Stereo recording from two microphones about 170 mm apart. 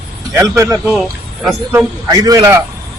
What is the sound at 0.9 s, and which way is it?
Speech, centre (ahead or behind).